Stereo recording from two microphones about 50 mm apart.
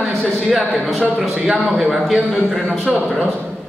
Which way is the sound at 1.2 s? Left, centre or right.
Centre.